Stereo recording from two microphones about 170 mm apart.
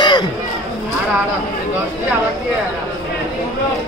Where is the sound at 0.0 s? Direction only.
25° left (ahead or behind).